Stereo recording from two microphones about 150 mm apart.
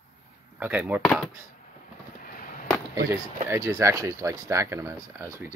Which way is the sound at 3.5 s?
20° right (ahead or behind).